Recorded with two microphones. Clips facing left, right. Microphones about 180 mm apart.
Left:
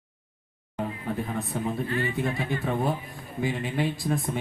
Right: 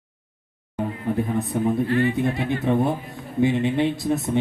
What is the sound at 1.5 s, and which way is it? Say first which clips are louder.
Speech: right 8 dB; 15° right (ahead or behind).